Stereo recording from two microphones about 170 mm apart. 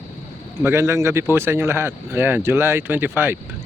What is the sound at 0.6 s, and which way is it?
Speech, 15° right (ahead or behind).